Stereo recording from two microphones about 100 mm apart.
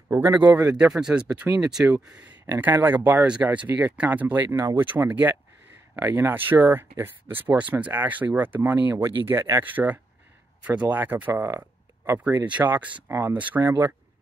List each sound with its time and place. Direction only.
0.3 s speech: 20° right (ahead or behind)
0.7 s speech: 5° right (ahead or behind); by 13.4 s 25° right (ahead or behind)
13.4 s speech: 15° right (ahead or behind)